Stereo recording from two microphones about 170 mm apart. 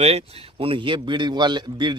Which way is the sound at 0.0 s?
35° right (ahead or behind).